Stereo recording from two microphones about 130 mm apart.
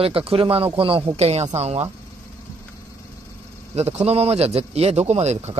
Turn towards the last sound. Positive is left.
turn(degrees=-55)  # may be behind; listen again after turning